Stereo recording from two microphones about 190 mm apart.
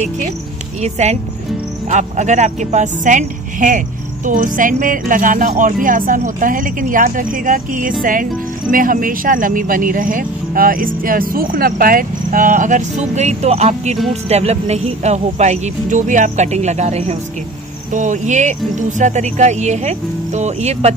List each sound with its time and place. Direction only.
0.8 s speech: 35° right (ahead or behind)